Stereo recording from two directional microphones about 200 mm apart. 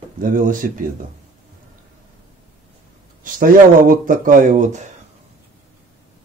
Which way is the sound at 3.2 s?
45° right (ahead or behind).